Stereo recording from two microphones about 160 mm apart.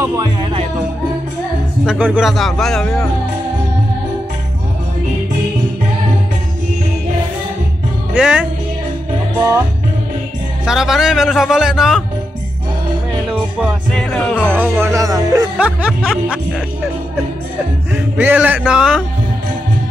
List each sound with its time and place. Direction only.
0.0 s music: 25° right (ahead or behind)
1.9 s speech: 5° right (ahead or behind)
8.1 s music: 5° right (ahead or behind)
10.6 s speech: centre (ahead or behind)
13.3 s music: 5° right (ahead or behind)
13.9 s music: 5° left (ahead or behind)
14.5 s speech: 15° right (ahead or behind)
15.5 s speech: 5° right (ahead or behind)
17.9 s speech: 10° right (ahead or behind)